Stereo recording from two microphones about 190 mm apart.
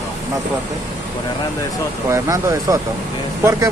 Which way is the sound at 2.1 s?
15° right (ahead or behind).